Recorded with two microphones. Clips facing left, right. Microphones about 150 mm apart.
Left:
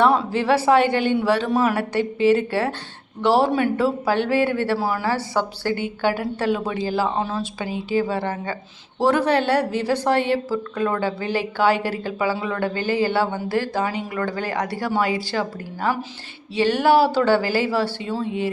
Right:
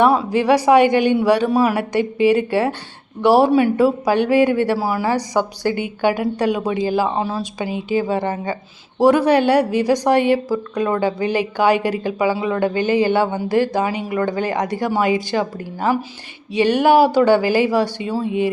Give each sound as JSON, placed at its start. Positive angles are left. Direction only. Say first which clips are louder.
{"t": 0.0, "sound": "a woman's voice", "louder": "right 3 dB", "side_deg": -10}